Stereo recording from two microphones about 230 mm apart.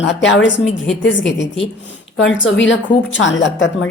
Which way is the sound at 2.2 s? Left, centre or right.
Left.